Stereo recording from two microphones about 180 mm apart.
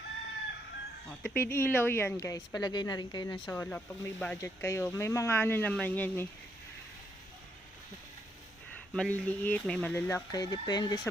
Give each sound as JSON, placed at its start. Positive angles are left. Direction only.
{"t": 1.2, "sound": "speech", "side_deg": 10}
{"t": 3.5, "sound": "speech", "side_deg": 10}
{"t": 8.9, "sound": "speech", "side_deg": 5}
{"t": 10.3, "sound": "speech", "side_deg": 20}